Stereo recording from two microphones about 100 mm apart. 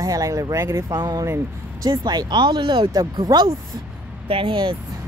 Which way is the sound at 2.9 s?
40° right (ahead or behind).